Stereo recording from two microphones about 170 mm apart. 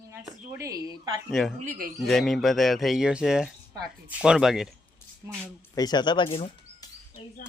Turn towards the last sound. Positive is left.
turn(degrees=30)  # may be behind; listen again after turning